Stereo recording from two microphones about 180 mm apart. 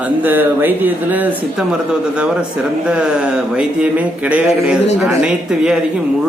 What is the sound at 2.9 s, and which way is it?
Speech, 5° right (ahead or behind).